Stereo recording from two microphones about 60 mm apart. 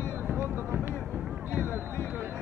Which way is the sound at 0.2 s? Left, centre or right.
Right.